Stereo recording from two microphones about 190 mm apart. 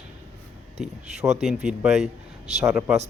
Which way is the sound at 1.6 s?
Centre (ahead or behind).